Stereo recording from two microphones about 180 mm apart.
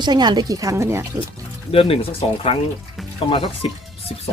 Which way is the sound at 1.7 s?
30° left (ahead or behind).